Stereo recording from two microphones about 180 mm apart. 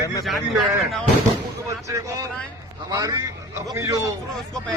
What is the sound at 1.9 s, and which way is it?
A man's voice, 20° right (ahead or behind).